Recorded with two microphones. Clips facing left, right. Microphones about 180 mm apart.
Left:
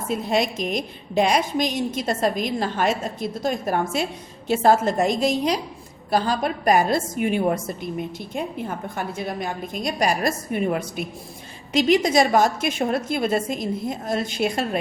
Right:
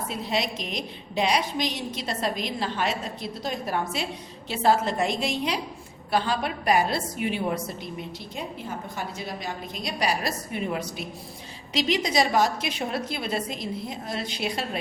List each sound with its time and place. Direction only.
0.1 s a woman's voice: 50° left (ahead or behind)